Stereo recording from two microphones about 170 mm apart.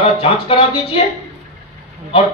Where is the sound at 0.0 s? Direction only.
35° left (ahead or behind).